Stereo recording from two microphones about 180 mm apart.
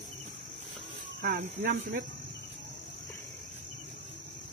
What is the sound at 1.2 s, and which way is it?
Speech, 55° right (ahead or behind).